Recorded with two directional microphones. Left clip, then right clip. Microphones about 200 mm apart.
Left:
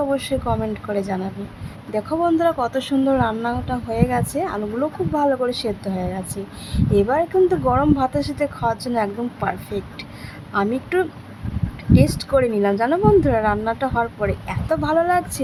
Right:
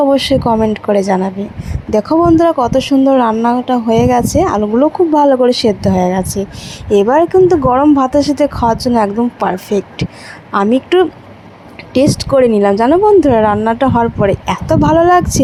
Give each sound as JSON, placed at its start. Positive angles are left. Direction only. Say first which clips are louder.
{"t": 0.1, "sound": "speech", "louder": "right 11 dB", "side_deg": -30}